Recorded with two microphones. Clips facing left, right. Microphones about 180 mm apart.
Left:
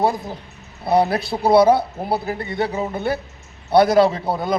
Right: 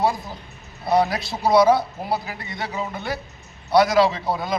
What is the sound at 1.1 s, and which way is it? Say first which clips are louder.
A man's voice: left 3 dB; 55° left (ahead or behind).